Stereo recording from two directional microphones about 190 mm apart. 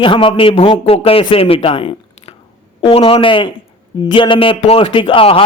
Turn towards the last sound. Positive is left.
turn(degrees=30)  # may be behind; listen again after turning